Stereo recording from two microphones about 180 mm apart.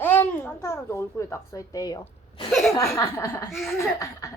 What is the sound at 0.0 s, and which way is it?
A child's voice, 10° left (ahead or behind).